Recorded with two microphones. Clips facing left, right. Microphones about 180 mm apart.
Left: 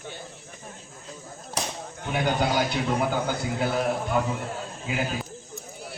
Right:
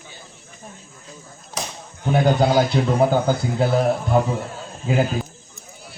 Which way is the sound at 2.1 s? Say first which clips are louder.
Right 7 dB; 35° right (ahead or behind).